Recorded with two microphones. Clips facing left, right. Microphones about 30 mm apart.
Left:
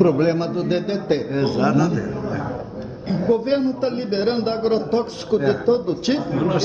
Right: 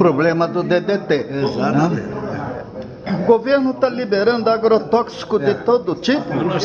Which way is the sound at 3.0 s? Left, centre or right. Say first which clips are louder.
Right 5 dB; right.